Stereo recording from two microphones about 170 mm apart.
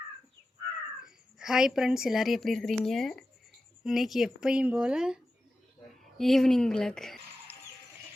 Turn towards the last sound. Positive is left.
turn(degrees=5)  # may be behind; listen again after turning